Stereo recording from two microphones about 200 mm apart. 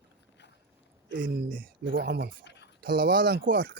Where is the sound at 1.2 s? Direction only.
45° right (ahead or behind).